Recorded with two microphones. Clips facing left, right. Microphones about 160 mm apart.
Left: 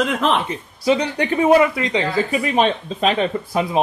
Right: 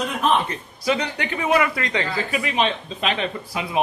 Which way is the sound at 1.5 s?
20° left (ahead or behind).